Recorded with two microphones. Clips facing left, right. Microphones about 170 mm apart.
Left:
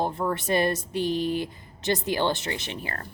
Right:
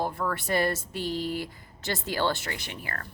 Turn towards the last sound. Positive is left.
turn(degrees=25)  # may be behind; listen again after turning